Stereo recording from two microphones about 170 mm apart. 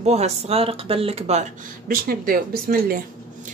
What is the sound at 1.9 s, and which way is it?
Speech, 60° right (ahead or behind).